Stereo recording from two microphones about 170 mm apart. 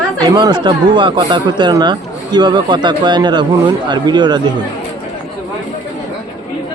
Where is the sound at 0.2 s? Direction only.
25° right (ahead or behind).